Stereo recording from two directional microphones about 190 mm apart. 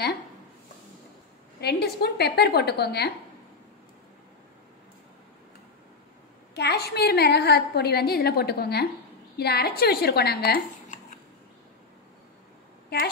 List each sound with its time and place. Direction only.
1.6 s a woman's voice: 60° left (ahead or behind)
6.5 s a woman's voice: 60° left (ahead or behind)